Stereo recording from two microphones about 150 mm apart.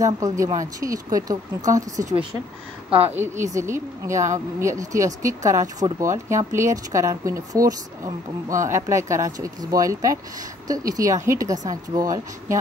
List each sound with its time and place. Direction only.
0.0 s speech: 20° right (ahead or behind)
3.1 s a woman's voice: 15° right (ahead or behind)